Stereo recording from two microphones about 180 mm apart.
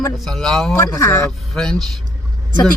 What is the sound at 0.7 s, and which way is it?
Speech, 15° left (ahead or behind).